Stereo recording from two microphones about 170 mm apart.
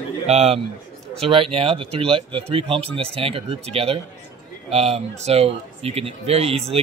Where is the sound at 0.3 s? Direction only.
40° right (ahead or behind).